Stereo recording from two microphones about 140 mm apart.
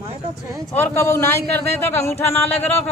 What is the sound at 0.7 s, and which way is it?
A man's voice, 20° left (ahead or behind).